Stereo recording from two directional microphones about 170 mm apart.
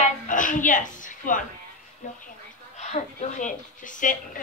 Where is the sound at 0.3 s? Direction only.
50° left (ahead or behind).